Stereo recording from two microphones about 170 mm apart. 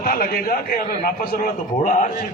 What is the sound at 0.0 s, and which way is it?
A man's voice, 60° left (ahead or behind).